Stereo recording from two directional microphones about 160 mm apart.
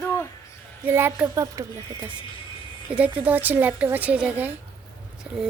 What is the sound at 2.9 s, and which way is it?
A child's voice, 10° right (ahead or behind).